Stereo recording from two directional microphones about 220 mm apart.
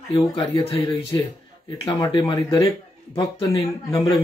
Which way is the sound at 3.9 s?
15° left (ahead or behind).